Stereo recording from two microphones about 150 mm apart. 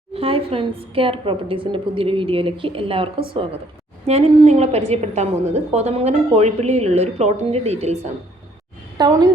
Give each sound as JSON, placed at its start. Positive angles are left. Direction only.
{"t": 0.1, "sound": "a woman's voice", "side_deg": -40}
{"t": 9.0, "sound": "a woman's voice", "side_deg": -25}